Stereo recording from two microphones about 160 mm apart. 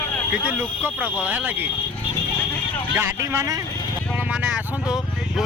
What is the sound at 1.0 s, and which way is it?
Speech, 10° right (ahead or behind).